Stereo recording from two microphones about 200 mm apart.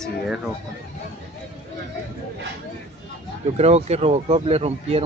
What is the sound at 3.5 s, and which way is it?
Speech, 30° right (ahead or behind).